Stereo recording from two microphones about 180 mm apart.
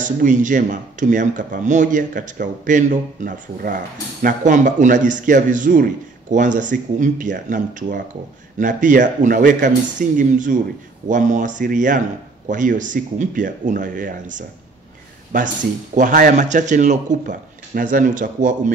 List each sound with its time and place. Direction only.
0.0 s speech: 45° right (ahead or behind)
15.3 s speech: 45° right (ahead or behind)